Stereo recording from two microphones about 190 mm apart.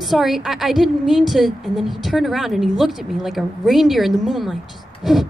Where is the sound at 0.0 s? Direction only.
Centre (ahead or behind).